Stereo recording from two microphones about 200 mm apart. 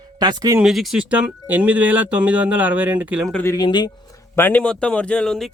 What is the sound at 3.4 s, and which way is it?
Speech, 20° left (ahead or behind).